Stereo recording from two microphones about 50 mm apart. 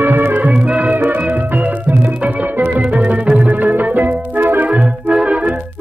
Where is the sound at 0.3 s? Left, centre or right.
Right.